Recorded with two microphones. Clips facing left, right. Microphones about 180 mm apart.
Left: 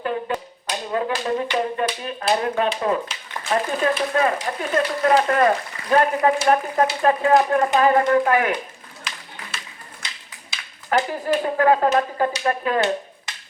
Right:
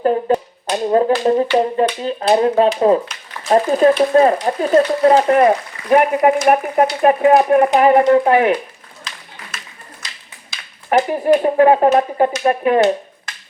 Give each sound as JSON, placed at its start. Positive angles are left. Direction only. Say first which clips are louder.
{"t": 0.3, "sound": "finger snapping", "louder": "right 10 dB", "side_deg": -40}
{"t": 0.7, "sound": "speech", "louder": "right 10 dB", "side_deg": -35}
{"t": 5.3, "sound": "speech", "louder": "right 6 dB", "side_deg": -20}
{"t": 10.9, "sound": "speech", "louder": "right 7 dB", "side_deg": -20}